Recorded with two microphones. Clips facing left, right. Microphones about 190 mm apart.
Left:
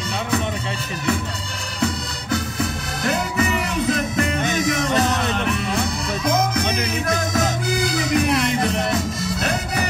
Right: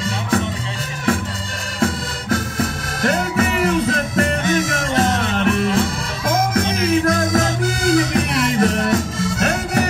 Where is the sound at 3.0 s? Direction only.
50° right (ahead or behind).